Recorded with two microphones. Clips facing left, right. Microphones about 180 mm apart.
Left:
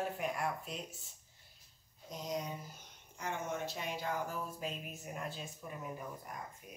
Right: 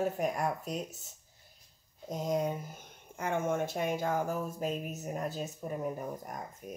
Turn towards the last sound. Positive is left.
turn(degrees=-45)  # may be behind; listen again after turning